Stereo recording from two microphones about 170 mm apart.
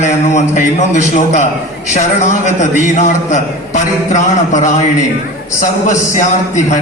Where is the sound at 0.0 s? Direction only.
45° left (ahead or behind).